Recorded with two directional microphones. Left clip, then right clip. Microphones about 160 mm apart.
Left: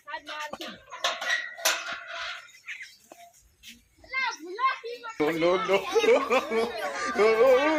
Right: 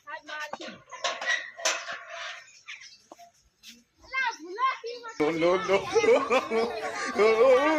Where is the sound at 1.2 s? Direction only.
10° right (ahead or behind).